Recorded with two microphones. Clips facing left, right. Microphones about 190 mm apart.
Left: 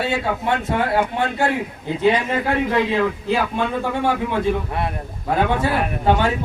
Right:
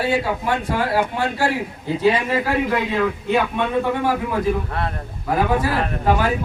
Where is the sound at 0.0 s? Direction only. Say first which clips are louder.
Right 1 dB; 25° left (ahead or behind).